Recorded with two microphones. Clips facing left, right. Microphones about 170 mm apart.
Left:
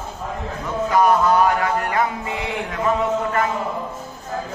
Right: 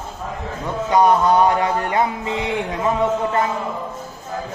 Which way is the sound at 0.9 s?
25° right (ahead or behind).